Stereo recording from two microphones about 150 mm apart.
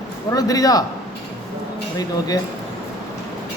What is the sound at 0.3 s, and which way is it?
Speech, 25° left (ahead or behind).